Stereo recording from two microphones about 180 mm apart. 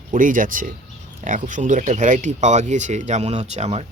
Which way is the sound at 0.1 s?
45° right (ahead or behind).